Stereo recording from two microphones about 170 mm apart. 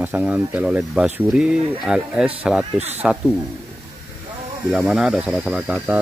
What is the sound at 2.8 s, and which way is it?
Speech, 40° right (ahead or behind).